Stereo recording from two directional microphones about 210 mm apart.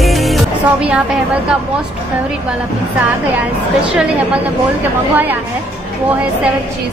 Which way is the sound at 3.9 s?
5° right (ahead or behind).